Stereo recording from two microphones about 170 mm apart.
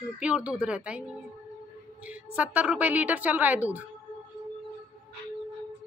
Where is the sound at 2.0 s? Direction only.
10° right (ahead or behind).